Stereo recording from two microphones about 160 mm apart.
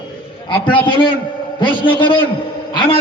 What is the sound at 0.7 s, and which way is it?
A man's voice, 30° left (ahead or behind).